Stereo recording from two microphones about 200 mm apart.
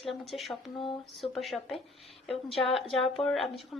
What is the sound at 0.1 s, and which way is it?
A woman's voice, centre (ahead or behind).